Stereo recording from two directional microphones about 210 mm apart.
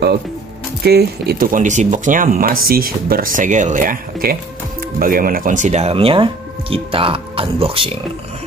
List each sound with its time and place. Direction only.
0.8 s speech: 50° right (ahead or behind); by 8.0 s 25° right (ahead or behind)